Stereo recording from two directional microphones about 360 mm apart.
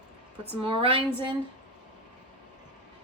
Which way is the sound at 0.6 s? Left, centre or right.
Centre.